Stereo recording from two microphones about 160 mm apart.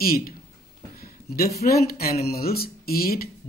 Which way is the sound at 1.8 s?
70° left (ahead or behind).